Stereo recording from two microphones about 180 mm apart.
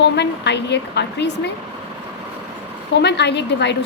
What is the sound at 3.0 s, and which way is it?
Speech, 70° left (ahead or behind).